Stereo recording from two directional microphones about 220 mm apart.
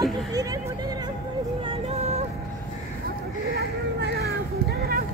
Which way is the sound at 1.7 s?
30° right (ahead or behind).